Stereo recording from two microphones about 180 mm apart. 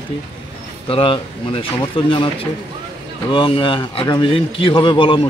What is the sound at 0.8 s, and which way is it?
A man's voice, 30° left (ahead or behind).